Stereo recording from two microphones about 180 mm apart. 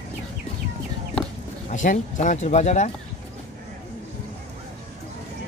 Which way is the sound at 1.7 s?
45° left (ahead or behind).